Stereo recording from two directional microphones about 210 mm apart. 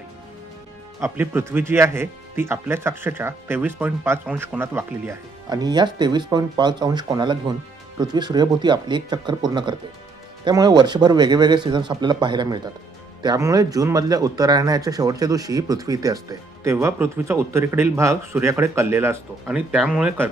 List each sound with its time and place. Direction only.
1.0 s speech: 10° right (ahead or behind)